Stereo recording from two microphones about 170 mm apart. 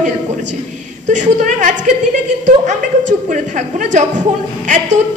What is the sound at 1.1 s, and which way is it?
A man's voice, 45° right (ahead or behind).